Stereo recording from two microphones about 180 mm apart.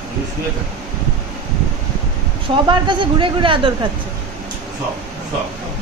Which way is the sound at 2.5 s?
25° right (ahead or behind).